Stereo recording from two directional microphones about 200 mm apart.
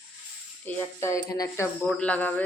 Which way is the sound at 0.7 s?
15° left (ahead or behind).